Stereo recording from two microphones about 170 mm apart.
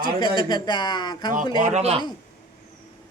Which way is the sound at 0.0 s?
30° left (ahead or behind).